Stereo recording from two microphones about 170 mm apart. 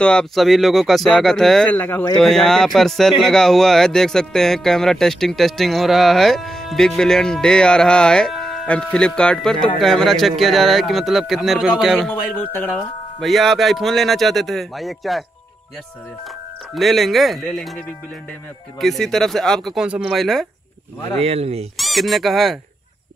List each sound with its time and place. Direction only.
0.0 s speech: 5° left (ahead or behind)
16.7 s speech: centre (ahead or behind)
21.2 s speech: 35° right (ahead or behind)
21.7 s speech: centre (ahead or behind)